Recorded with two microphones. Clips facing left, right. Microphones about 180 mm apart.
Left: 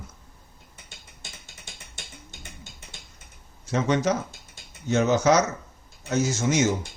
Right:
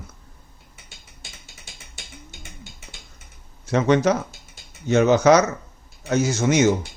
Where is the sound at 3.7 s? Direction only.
65° right (ahead or behind).